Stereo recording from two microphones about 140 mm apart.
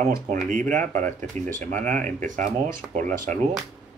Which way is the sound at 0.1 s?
70° right (ahead or behind).